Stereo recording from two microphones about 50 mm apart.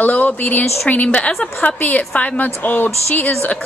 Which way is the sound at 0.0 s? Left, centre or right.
Left.